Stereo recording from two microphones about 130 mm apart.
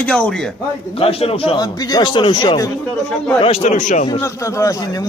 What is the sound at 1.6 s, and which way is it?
Speech, 30° left (ahead or behind).